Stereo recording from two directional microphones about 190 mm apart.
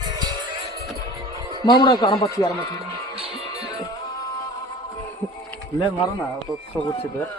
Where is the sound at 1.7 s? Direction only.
20° left (ahead or behind).